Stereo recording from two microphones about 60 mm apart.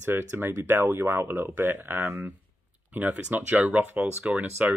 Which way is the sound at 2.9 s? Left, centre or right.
Right.